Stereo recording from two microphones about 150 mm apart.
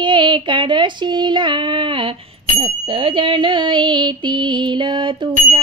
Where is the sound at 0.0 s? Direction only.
30° right (ahead or behind).